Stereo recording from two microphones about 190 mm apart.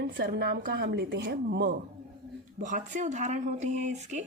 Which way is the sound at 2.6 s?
40° right (ahead or behind).